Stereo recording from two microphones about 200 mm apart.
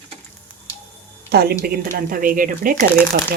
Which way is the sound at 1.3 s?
50° right (ahead or behind).